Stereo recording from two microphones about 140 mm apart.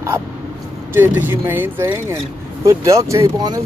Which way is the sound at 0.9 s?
15° right (ahead or behind).